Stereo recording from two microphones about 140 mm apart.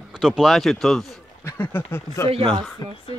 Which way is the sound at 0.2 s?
Centre (ahead or behind).